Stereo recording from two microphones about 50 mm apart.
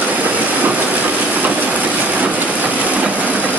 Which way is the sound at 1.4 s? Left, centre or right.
Right.